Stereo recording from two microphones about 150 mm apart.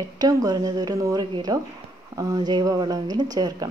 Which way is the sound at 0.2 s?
25° right (ahead or behind).